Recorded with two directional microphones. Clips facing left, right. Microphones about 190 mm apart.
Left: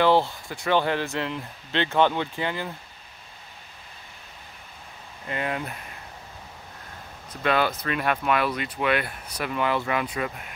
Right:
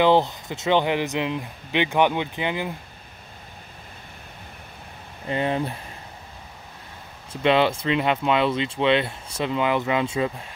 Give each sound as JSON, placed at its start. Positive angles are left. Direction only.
{"t": 0.0, "sound": "speech", "side_deg": -20}
{"t": 5.3, "sound": "speech", "side_deg": -30}
{"t": 7.4, "sound": "speech", "side_deg": -25}